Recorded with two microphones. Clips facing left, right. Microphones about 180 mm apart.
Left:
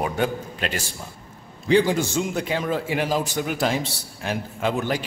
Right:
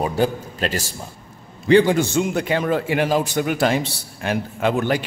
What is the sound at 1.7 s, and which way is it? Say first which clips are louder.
A man's voice: right 4 dB; 60° right (ahead or behind).